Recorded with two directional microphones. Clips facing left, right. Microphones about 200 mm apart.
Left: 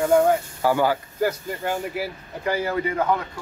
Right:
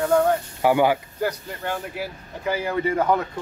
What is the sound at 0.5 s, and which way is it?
Speech, 15° right (ahead or behind).